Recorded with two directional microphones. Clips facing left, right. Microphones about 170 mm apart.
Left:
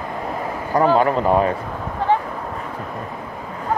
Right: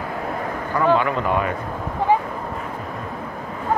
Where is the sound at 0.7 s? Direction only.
40° left (ahead or behind).